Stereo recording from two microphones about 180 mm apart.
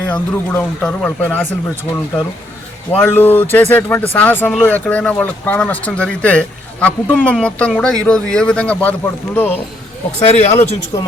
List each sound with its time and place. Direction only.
0.1 s speech: 10° left (ahead or behind)
3.0 s speech: 10° left (ahead or behind)
10.2 s speech: 35° left (ahead or behind)